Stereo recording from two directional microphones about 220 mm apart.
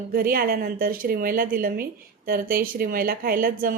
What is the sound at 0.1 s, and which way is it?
A woman's voice, 40° right (ahead or behind).